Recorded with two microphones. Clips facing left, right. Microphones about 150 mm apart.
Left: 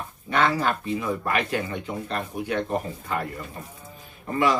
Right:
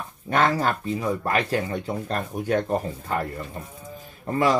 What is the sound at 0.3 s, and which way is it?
Speech, 45° right (ahead or behind).